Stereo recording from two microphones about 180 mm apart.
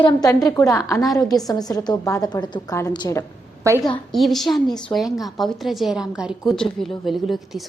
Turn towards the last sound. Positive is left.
turn(degrees=0)  # may be behind; listen again after turning